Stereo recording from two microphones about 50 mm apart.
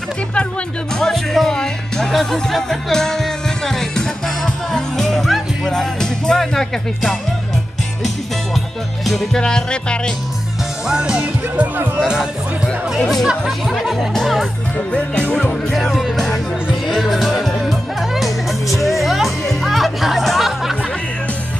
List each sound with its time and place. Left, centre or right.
0.9 s music: centre
9.0 s music: centre
9.4 s music: centre
10.9 s speech: centre
12.0 s speech: centre
13.7 s music: centre
14.9 s music: left
15.7 s music: centre